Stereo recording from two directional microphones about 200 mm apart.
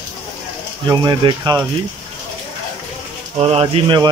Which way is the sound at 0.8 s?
20° right (ahead or behind).